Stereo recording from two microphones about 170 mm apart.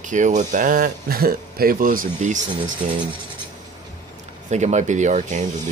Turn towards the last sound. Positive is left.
turn(degrees=-45)  # may be behind; listen again after turning